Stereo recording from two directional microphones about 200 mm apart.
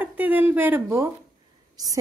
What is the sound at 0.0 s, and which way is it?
A woman's voice, 10° right (ahead or behind).